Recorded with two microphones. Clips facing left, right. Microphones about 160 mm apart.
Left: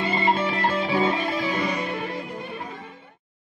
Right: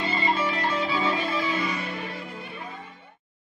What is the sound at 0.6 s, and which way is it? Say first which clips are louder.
Music: left 4 dB; 55° left (ahead or behind).